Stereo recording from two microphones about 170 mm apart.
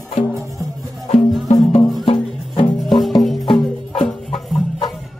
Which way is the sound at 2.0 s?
30° left (ahead or behind).